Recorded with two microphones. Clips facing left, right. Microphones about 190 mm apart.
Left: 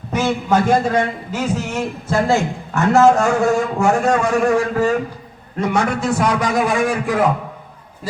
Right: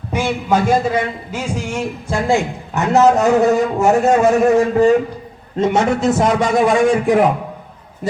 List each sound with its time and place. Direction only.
0.1 s a man's voice: 10° right (ahead or behind)